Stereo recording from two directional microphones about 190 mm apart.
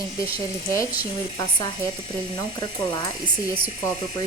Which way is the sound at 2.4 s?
20° left (ahead or behind).